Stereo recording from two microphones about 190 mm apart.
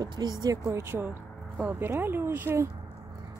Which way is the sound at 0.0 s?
20° right (ahead or behind).